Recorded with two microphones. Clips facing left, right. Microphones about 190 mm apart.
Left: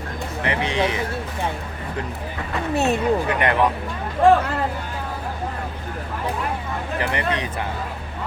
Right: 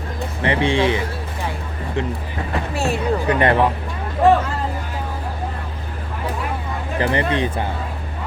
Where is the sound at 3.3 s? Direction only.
30° right (ahead or behind).